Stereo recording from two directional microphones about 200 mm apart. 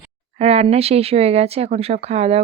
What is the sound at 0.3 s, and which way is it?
Speech, 30° right (ahead or behind).